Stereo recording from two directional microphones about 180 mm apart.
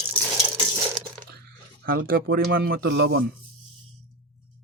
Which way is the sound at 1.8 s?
55° right (ahead or behind).